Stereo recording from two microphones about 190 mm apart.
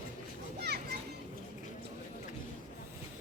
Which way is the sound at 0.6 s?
60° right (ahead or behind).